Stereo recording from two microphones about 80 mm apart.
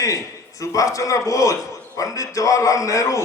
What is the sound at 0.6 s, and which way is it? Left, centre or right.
A man's voice, left.